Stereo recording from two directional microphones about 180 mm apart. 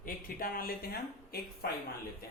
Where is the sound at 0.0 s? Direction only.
55° left (ahead or behind).